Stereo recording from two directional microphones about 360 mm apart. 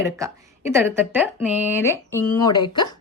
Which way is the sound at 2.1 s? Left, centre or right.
Centre.